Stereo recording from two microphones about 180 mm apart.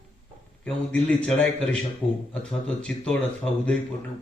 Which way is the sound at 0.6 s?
5° left (ahead or behind).